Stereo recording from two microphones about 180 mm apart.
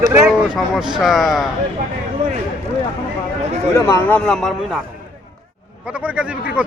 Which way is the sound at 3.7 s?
15° left (ahead or behind).